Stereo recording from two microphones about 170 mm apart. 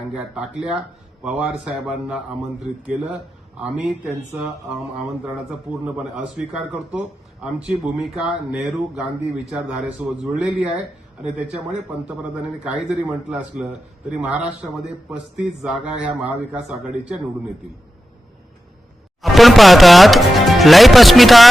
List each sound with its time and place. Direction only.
0.1 s a man's voice: 5° right (ahead or behind)
4.4 s a man's voice: 5° right (ahead or behind)
12.0 s a man's voice: 5° right (ahead or behind)
19.2 s a man's voice: centre (ahead or behind)